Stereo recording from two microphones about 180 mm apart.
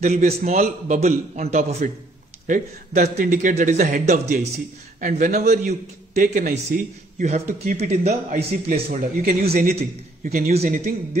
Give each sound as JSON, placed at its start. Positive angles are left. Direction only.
{"t": 0.0, "sound": "a man's voice", "side_deg": -35}
{"t": 2.4, "sound": "a man's voice", "side_deg": -50}
{"t": 9.2, "sound": "speech", "side_deg": -55}